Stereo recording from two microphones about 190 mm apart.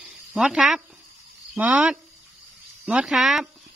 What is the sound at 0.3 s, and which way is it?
Speech, centre (ahead or behind).